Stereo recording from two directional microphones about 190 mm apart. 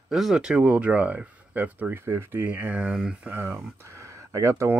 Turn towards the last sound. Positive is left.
turn(degrees=-15)  # may be behind; listen again after turning